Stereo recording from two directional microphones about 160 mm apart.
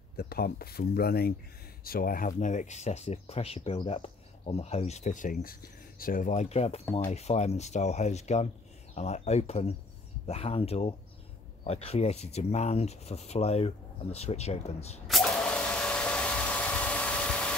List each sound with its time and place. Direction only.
0.2 s speech: 75° left (ahead or behind)
1.9 s speech: 65° left (ahead or behind); by 15.0 s 40° left (ahead or behind)
15.0 s a sound: centre (ahead or behind)